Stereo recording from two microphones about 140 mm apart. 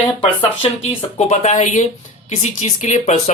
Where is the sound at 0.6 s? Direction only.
45° left (ahead or behind).